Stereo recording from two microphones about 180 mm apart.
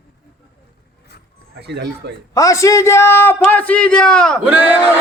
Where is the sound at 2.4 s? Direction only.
20° left (ahead or behind).